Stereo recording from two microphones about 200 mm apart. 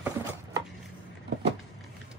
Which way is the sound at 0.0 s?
15° right (ahead or behind).